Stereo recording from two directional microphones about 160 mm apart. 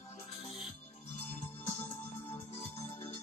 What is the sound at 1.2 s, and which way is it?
Music, 45° left (ahead or behind).